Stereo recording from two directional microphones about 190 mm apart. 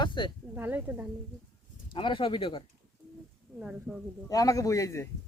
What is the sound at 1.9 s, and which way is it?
Speech, 25° left (ahead or behind).